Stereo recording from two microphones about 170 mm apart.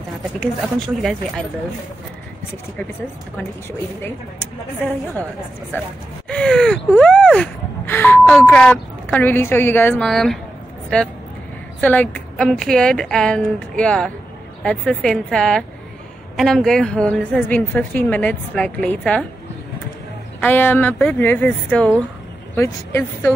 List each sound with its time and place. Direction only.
0.4 s a woman's voice: 5° left (ahead or behind)
4.0 s a woman's voice: 10° left (ahead or behind)
6.2 s a sound: 5° left (ahead or behind)
8.5 s a woman's voice: 10° left (ahead or behind)
20.3 s a woman's voice: 10° left (ahead or behind)